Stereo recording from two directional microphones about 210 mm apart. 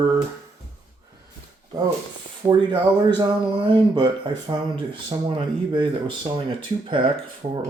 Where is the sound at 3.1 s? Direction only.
20° right (ahead or behind).